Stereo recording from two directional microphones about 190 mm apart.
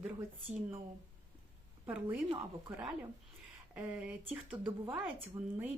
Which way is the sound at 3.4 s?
5° right (ahead or behind).